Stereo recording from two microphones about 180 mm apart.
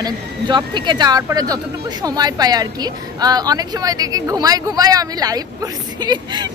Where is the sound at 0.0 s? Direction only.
25° right (ahead or behind).